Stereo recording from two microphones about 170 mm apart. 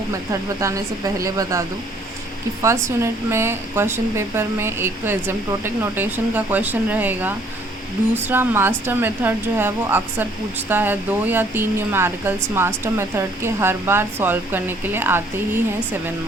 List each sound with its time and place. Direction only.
0.6 s speech: 20° right (ahead or behind)